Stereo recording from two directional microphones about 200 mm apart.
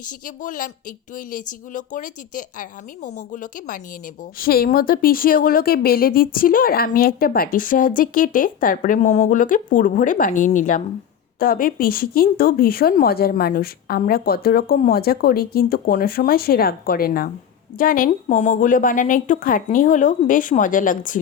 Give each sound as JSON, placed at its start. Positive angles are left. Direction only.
{"t": 0.0, "sound": "a woman's voice", "side_deg": 40}